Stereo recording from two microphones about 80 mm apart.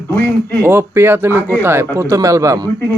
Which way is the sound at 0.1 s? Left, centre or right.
Left.